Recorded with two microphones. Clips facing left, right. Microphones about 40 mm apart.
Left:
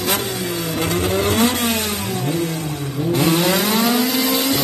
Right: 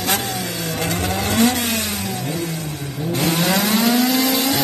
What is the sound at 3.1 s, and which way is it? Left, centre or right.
Vehicle, centre.